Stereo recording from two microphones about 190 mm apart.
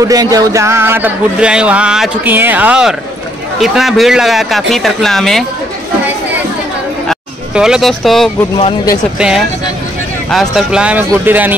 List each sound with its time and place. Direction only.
0.0 s a man's voice: 20° right (ahead or behind); by 5.4 s centre (ahead or behind)
7.1 s speech: 5° right (ahead or behind)
8.5 s speech: 25° left (ahead or behind)
10.3 s a man's voice: centre (ahead or behind)